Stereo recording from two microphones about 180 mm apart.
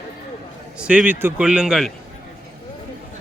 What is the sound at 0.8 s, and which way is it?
Speech, 5° right (ahead or behind).